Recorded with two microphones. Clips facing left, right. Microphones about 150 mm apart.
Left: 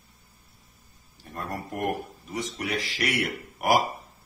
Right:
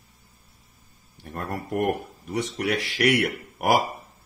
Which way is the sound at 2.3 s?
65° right (ahead or behind).